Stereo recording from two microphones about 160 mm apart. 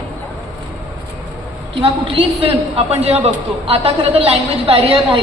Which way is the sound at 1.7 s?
35° right (ahead or behind).